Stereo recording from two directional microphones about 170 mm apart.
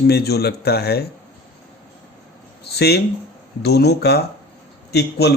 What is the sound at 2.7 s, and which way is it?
A man's voice, 75° left (ahead or behind).